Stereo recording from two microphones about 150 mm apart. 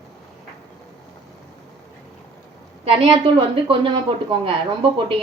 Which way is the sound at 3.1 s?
35° right (ahead or behind).